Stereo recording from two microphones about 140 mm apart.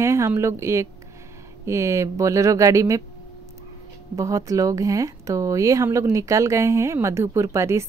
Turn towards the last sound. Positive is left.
turn(degrees=-20)  # may be behind; listen again after turning